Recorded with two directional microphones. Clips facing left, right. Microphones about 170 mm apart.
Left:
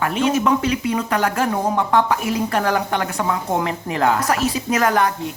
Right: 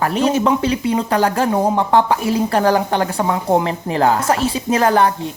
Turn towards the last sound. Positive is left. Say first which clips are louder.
# right 4 dB
turn(degrees=-30)  # may be behind; listen again after turning